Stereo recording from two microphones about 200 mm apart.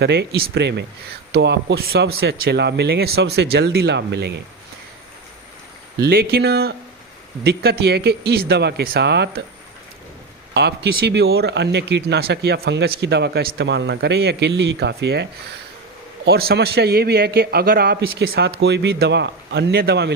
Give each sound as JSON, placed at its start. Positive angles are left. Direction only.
{"t": 0.0, "sound": "speech", "side_deg": -55}
{"t": 6.0, "sound": "a man's voice", "side_deg": -50}
{"t": 10.5, "sound": "a man's voice", "side_deg": -55}